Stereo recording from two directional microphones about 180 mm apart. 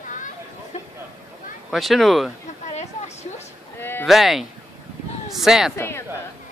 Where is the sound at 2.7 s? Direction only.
40° left (ahead or behind).